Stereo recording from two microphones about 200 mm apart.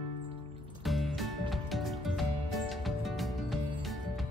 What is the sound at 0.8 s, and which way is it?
Music, centre (ahead or behind).